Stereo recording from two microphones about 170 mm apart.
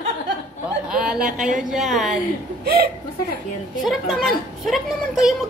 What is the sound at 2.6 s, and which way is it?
Speech, 65° right (ahead or behind).